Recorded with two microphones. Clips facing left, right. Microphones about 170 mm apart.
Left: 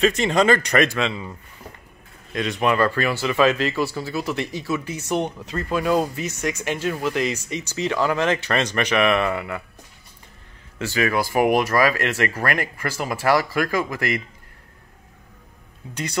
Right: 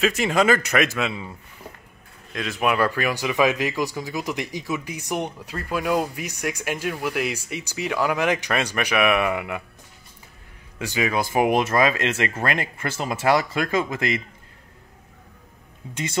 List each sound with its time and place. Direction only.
0.0 s a man's voice: 5° right (ahead or behind)
2.3 s speech: centre (ahead or behind)
10.8 s speech: 15° right (ahead or behind)
15.9 s speech: 20° right (ahead or behind)